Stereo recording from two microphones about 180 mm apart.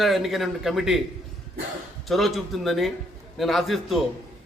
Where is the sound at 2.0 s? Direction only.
Centre (ahead or behind).